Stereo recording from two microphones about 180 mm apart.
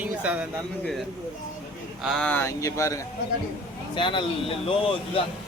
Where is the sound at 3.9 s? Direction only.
25° left (ahead or behind).